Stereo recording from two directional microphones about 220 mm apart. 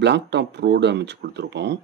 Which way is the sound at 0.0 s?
50° right (ahead or behind).